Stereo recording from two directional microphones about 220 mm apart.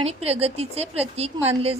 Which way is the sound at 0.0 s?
25° right (ahead or behind).